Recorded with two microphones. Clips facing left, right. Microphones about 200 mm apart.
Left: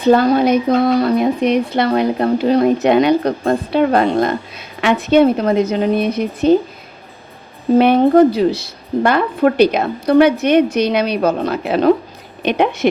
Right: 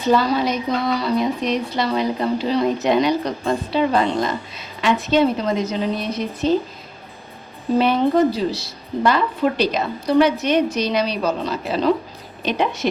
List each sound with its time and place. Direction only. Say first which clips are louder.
0.0 s speech: left 6 dB; 55° left (ahead or behind)
7.8 s speech: left 6 dB; 55° left (ahead or behind)